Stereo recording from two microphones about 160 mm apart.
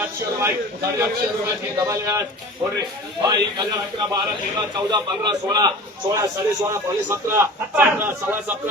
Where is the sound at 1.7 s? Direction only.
20° right (ahead or behind).